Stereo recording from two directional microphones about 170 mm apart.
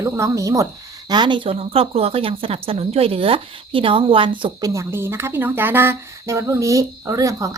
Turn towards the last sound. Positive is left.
turn(degrees=-20)  # may be behind; listen again after turning